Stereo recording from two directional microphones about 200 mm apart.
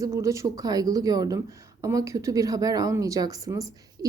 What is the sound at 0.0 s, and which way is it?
Speech, 15° right (ahead or behind).